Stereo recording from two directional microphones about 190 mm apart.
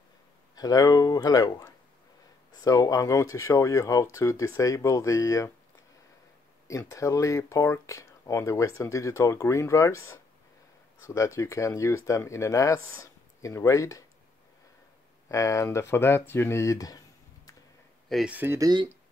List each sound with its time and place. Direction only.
0.6 s speech: 20° left (ahead or behind)
6.7 s speech: 15° left (ahead or behind)
15.2 s speech: 15° left (ahead or behind)
18.0 s speech: centre (ahead or behind); by 18.9 s 20° right (ahead or behind)